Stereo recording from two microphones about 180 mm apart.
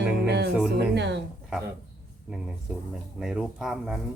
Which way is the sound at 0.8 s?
70° right (ahead or behind).